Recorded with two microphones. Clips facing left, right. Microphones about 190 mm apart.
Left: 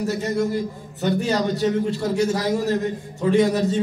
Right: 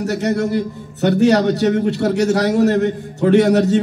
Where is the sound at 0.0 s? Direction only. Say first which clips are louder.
Right 4 dB; 70° right (ahead or behind).